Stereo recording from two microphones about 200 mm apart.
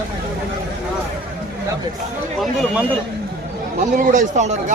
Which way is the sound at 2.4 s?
Centre (ahead or behind).